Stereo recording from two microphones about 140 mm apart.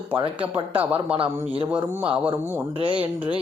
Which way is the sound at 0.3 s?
10° right (ahead or behind).